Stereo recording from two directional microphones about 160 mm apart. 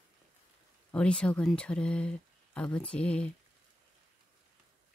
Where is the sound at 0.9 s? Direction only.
5° left (ahead or behind).